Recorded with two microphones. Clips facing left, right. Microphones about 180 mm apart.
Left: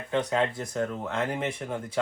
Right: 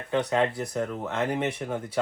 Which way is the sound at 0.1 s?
5° right (ahead or behind).